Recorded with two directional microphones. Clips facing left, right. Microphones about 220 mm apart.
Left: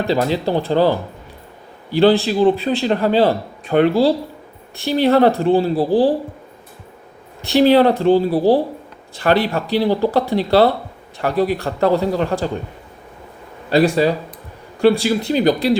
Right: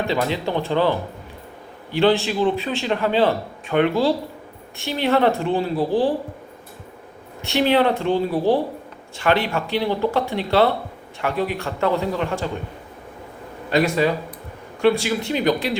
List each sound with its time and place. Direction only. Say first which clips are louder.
0.1 s a man's voice: left 5 dB; 35° left (ahead or behind)
7.4 s a man's voice: left 6 dB; 35° left (ahead or behind)
13.7 s a man's voice: left 4 dB; 35° left (ahead or behind)